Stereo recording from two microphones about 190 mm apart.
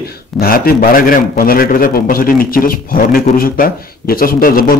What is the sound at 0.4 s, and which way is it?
A man's voice, 50° left (ahead or behind).